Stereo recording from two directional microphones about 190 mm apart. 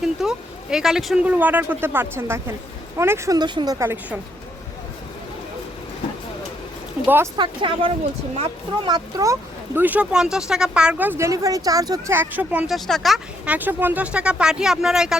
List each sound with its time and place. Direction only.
0.0 s speech: 5° right (ahead or behind)
7.3 s speech: 25° right (ahead or behind); by 15.1 s 5° right (ahead or behind)